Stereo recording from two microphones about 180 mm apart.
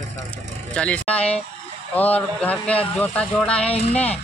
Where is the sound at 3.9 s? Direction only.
5° left (ahead or behind).